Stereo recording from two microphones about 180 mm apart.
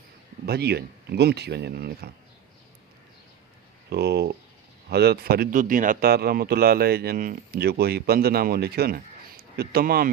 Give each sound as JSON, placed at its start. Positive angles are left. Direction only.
{"t": 0.4, "sound": "speech", "side_deg": -60}
{"t": 3.8, "sound": "speech", "side_deg": -65}